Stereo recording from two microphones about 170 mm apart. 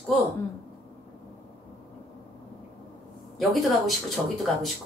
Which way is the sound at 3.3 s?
Centre (ahead or behind).